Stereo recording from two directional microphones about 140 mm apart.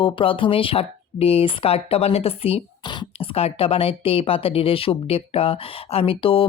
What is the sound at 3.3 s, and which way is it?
Speech, 45° left (ahead or behind).